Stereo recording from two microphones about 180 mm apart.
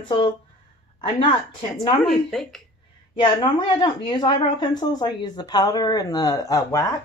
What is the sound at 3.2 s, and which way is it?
Speech, 25° left (ahead or behind).